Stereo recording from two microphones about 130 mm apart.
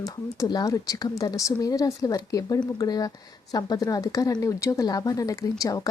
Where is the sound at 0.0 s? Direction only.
30° left (ahead or behind).